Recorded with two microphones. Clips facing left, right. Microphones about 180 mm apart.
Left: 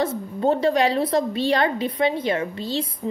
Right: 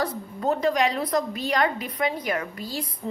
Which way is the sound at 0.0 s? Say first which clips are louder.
Left 5 dB; 25° left (ahead or behind).